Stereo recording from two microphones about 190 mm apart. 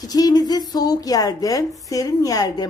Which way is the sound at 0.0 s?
20° left (ahead or behind).